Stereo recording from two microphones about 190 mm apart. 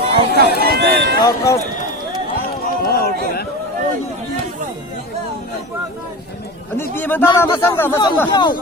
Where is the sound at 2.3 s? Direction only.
50° left (ahead or behind).